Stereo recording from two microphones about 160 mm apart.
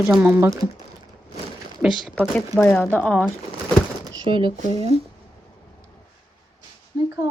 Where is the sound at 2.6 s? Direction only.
15° left (ahead or behind).